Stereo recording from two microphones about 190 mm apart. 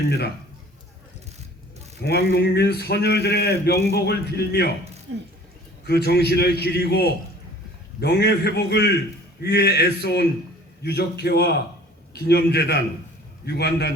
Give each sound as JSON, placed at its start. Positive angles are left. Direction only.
{"t": 2.0, "sound": "a man's voice", "side_deg": 60}
{"t": 5.1, "sound": "speech", "side_deg": -90}
{"t": 5.8, "sound": "a man's voice", "side_deg": 60}